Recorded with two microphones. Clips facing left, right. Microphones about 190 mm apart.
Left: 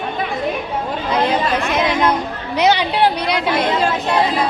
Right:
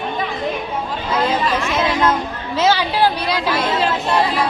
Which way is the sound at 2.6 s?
20° left (ahead or behind).